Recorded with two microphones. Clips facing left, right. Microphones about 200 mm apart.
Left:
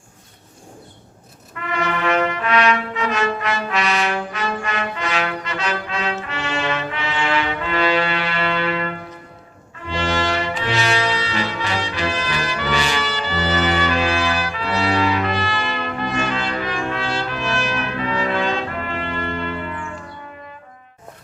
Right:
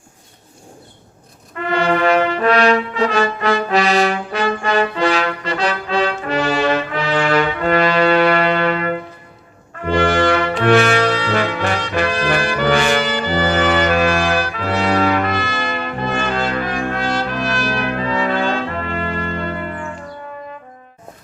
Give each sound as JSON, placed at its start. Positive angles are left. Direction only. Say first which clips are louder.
{"t": 1.7, "sound": "brass instrument", "louder": "right 6 dB", "side_deg": -35}
{"t": 10.6, "sound": "music", "louder": "right 11 dB", "side_deg": -55}